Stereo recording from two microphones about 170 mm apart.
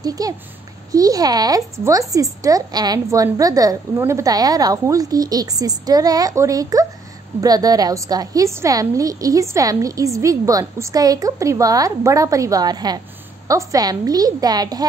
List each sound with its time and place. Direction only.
0.0 s a woman's voice: 20° right (ahead or behind)